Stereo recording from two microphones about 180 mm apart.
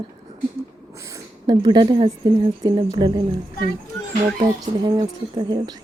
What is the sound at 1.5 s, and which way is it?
Speech, 25° right (ahead or behind).